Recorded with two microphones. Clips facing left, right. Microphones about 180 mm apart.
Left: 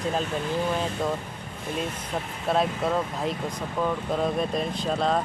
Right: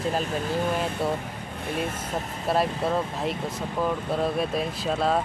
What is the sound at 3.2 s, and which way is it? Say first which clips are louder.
Speech: even; 5° right (ahead or behind).